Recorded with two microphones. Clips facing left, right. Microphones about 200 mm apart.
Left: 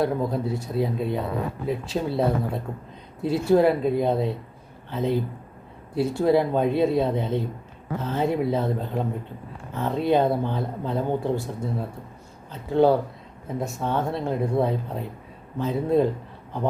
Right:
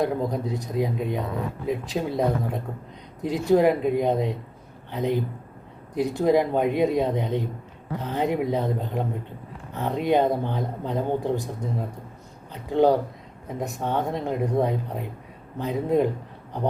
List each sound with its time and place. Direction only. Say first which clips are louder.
0.0 s speech: left 1 dB; 15° right (ahead or behind)